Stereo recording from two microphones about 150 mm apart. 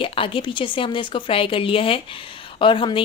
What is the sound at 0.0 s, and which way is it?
A woman's voice, 35° left (ahead or behind).